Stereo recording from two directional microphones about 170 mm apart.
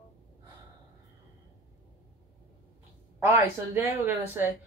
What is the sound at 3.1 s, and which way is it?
Speech, 10° right (ahead or behind).